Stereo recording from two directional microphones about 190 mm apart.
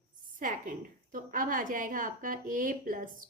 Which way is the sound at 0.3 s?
45° right (ahead or behind).